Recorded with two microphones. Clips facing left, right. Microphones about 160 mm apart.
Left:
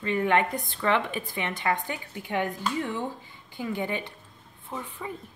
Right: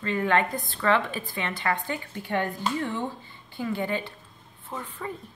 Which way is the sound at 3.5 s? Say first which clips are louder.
Right 2 dB; 15° left (ahead or behind).